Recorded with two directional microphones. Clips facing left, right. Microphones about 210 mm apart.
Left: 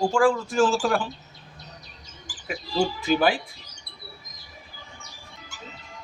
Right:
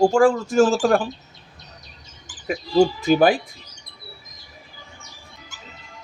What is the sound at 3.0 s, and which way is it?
Speech, 45° right (ahead or behind).